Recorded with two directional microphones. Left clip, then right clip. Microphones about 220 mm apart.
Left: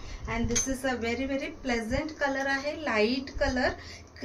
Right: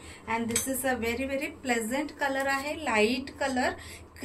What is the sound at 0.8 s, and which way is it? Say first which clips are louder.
A woman's voice: right 1 dB; 5° left (ahead or behind).